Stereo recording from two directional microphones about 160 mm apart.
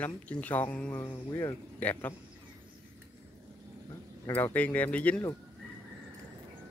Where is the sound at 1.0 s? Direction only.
20° left (ahead or behind).